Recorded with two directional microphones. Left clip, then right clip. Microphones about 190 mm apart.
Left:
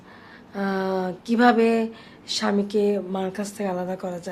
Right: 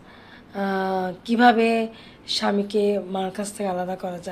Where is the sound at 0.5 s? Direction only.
15° left (ahead or behind).